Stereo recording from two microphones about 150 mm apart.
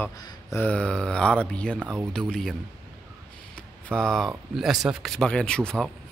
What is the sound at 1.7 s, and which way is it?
Speech, 15° right (ahead or behind).